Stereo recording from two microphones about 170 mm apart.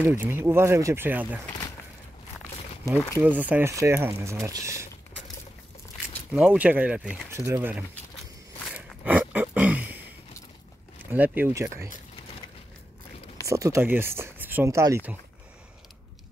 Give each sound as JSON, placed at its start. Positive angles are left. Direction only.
{"t": 0.0, "sound": "speech", "side_deg": -10}
{"t": 3.2, "sound": "speech", "side_deg": -10}
{"t": 6.3, "sound": "speech", "side_deg": -5}
{"t": 8.7, "sound": "a sound", "side_deg": -10}
{"t": 11.1, "sound": "speech", "side_deg": -10}
{"t": 13.5, "sound": "speech", "side_deg": -15}